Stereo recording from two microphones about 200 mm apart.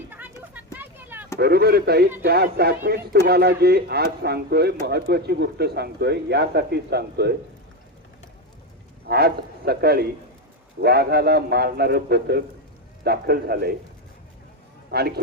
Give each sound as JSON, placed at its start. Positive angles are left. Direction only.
{"t": 0.5, "sound": "vehicle", "side_deg": -10}
{"t": 1.4, "sound": "speech", "side_deg": -50}
{"t": 9.0, "sound": "speech", "side_deg": -50}
{"t": 14.8, "sound": "a man's voice", "side_deg": -55}